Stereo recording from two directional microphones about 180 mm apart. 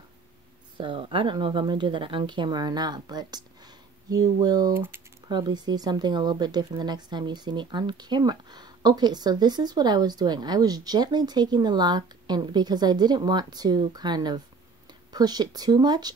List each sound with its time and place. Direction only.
0.7 s speech: 30° right (ahead or behind); by 5.0 s 10° right (ahead or behind)
5.3 s speech: 25° right (ahead or behind)